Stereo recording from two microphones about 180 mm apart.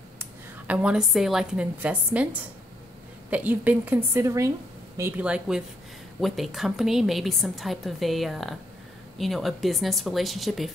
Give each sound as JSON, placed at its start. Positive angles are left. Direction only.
{"t": 0.2, "sound": "a woman's voice", "side_deg": -10}